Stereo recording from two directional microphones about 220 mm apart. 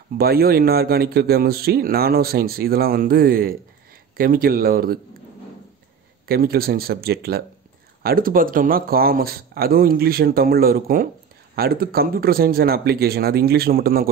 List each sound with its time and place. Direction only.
0.2 s speech: 45° right (ahead or behind)
6.2 s speech: 45° right (ahead or behind)